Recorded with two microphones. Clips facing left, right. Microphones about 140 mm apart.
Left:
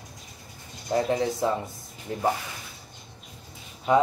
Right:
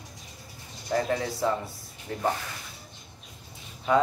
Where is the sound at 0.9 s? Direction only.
20° left (ahead or behind).